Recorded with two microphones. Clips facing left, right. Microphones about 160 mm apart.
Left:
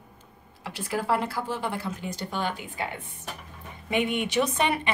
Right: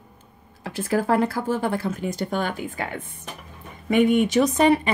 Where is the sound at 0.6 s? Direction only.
45° right (ahead or behind).